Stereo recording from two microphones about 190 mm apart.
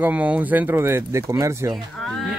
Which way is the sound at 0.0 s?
5° right (ahead or behind).